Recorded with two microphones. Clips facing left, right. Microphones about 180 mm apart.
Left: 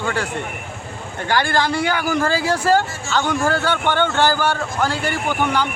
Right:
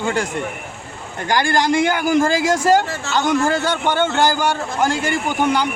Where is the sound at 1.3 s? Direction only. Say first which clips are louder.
Right 2 dB; 15° right (ahead or behind).